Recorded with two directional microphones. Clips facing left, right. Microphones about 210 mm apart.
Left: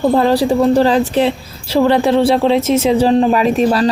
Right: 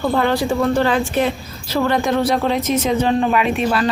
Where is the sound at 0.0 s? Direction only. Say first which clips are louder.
Left 5 dB; 35° left (ahead or behind).